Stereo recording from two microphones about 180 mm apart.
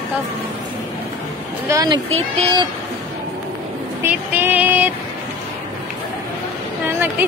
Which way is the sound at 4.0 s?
10° right (ahead or behind).